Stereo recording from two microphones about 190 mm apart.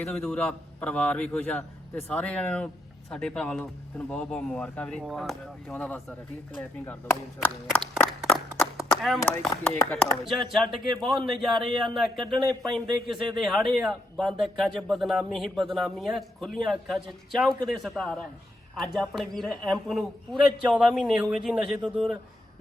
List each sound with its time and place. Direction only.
0.0 s a man's voice: 5° left (ahead or behind)
7.4 s a man's voice: 10° left (ahead or behind)
8.5 s a sound: centre (ahead or behind)
9.9 s speech: 5° left (ahead or behind)